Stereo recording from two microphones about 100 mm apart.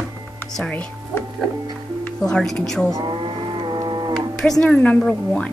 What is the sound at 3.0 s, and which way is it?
Livestock, 55° right (ahead or behind).